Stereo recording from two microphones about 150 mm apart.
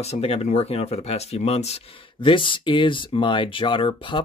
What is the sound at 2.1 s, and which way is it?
Speech, 35° left (ahead or behind).